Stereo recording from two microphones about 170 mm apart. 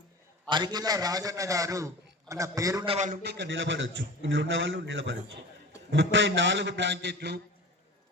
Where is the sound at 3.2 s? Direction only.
90° right.